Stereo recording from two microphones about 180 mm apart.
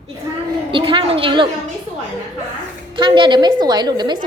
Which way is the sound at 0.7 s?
30° right (ahead or behind).